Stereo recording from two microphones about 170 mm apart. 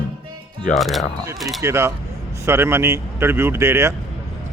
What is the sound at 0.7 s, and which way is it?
Speech, centre (ahead or behind).